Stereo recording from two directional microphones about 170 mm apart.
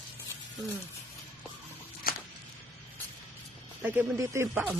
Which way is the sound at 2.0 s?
60° left (ahead or behind).